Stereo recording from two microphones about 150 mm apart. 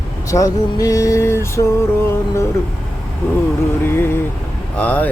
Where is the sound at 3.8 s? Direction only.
15° left (ahead or behind).